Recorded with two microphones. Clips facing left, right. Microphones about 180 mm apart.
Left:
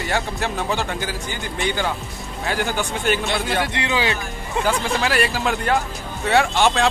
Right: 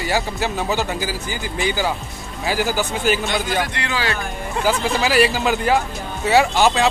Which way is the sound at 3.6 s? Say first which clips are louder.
Left 1 dB; 20° left (ahead or behind).